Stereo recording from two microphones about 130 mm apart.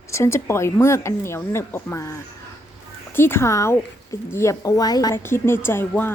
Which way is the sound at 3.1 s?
15° left (ahead or behind).